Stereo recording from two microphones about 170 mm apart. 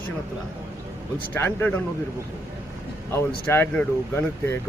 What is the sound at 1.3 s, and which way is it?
Speech, 10° left (ahead or behind).